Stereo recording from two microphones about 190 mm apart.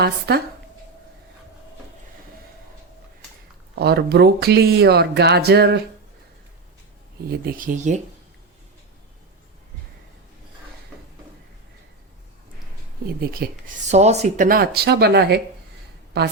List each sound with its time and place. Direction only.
0.0 s speech: 60° right (ahead or behind)
3.8 s speech: 55° right (ahead or behind)
7.3 s speech: 50° right (ahead or behind)
13.1 s speech: 50° right (ahead or behind)
13.8 s speech: 35° right (ahead or behind); by 16.3 s 60° right (ahead or behind)